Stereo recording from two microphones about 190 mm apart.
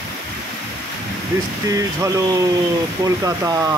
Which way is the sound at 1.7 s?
20° right (ahead or behind).